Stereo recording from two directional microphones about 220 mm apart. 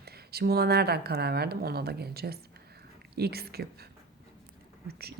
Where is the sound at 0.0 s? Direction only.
45° right (ahead or behind).